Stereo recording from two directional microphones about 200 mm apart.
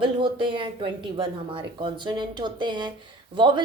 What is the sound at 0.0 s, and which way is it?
Speech, 25° right (ahead or behind).